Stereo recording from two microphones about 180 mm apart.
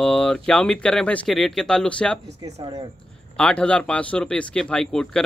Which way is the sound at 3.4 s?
5° left (ahead or behind).